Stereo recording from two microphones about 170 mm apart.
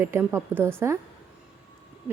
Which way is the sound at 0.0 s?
10° right (ahead or behind).